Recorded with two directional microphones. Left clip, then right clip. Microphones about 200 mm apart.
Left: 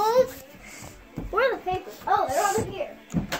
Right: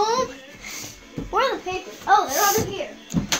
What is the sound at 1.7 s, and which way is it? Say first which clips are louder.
Speech: even; 35° right (ahead or behind).